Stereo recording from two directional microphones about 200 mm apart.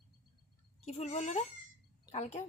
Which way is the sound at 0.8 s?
35° left (ahead or behind).